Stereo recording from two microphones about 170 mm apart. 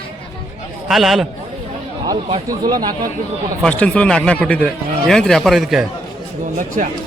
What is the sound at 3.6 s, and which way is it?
Speech, 5° left (ahead or behind).